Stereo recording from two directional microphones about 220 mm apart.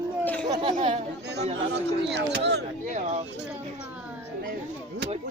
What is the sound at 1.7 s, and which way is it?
Speech, 50° right (ahead or behind).